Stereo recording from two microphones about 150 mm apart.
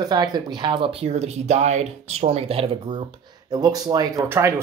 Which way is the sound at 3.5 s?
25° right (ahead or behind).